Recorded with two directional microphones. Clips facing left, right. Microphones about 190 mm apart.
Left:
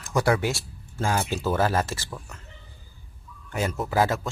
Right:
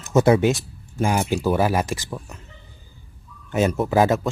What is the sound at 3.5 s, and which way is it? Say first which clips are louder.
Speech: right 7 dB; 20° right (ahead or behind).